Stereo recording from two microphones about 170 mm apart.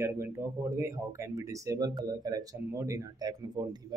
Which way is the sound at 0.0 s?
15° right (ahead or behind).